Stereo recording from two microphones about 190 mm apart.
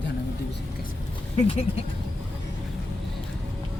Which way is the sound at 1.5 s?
30° left (ahead or behind).